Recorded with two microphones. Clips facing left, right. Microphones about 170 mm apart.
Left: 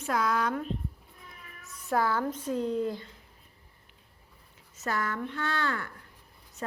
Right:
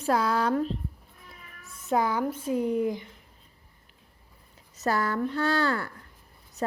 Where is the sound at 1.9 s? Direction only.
15° right (ahead or behind).